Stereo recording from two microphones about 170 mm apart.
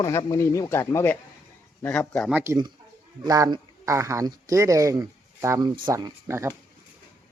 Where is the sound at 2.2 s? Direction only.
10° right (ahead or behind).